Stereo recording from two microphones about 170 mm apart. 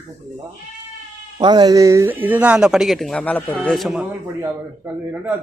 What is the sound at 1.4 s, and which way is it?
A man's voice, 25° right (ahead or behind).